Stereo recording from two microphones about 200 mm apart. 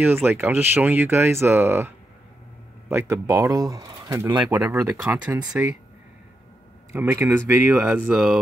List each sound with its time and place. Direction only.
0.0 s speech: 10° right (ahead or behind)
6.9 s speech: 10° right (ahead or behind)